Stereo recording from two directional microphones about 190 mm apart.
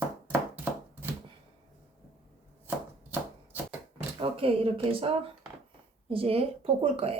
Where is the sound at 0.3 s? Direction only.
10° right (ahead or behind).